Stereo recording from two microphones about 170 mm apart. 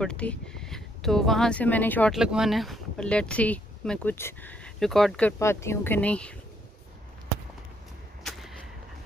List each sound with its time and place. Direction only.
0.0 s speech: 5° left (ahead or behind)
2.1 s speech: 5° right (ahead or behind)
5.4 s speech: 15° left (ahead or behind)
8.2 s whip: centre (ahead or behind)